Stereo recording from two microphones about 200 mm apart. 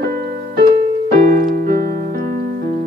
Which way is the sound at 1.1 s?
45° right (ahead or behind).